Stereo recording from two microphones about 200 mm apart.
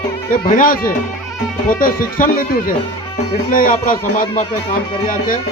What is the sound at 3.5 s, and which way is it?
Speech, 45° left (ahead or behind).